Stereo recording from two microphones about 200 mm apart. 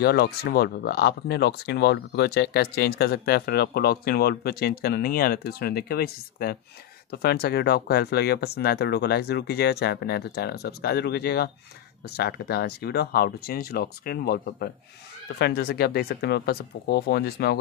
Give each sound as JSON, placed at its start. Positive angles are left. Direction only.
{"t": 0.0, "sound": "speech", "side_deg": 50}